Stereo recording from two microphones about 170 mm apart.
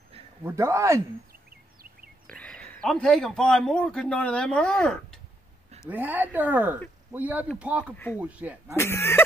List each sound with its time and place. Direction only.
0.4 s a woman's voice: 15° right (ahead or behind)
2.2 s a man's voice: 5° left (ahead or behind)
5.9 s a woman's voice: 10° right (ahead or behind)
7.9 s speech: 10° left (ahead or behind)
8.2 s a woman's voice: 10° right (ahead or behind)
8.7 s speech: 15° left (ahead or behind)